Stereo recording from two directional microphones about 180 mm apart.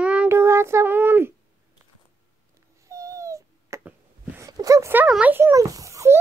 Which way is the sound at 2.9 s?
15° right (ahead or behind).